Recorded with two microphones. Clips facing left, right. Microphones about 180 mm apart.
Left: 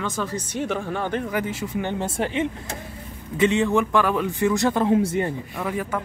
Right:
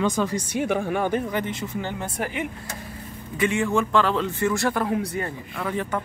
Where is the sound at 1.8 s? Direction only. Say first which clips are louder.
Left 4 dB; 25° left (ahead or behind).